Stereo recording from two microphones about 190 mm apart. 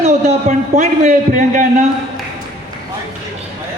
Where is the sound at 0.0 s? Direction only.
40° right (ahead or behind).